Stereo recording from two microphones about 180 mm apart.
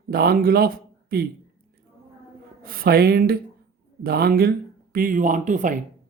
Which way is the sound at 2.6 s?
55° right (ahead or behind).